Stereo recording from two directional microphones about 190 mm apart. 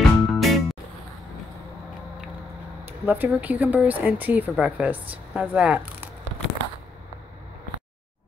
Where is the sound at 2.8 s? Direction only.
10° right (ahead or behind).